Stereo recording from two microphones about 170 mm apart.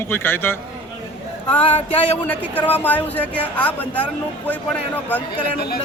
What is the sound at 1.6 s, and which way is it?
Speech, 35° left (ahead or behind).